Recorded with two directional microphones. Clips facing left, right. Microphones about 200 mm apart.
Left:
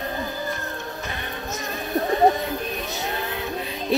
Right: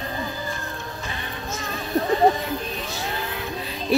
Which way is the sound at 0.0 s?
55° left (ahead or behind).